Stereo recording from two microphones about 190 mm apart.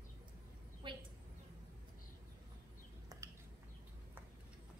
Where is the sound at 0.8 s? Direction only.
25° right (ahead or behind).